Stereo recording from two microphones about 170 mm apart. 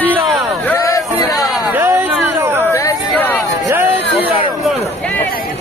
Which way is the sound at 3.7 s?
10° right (ahead or behind).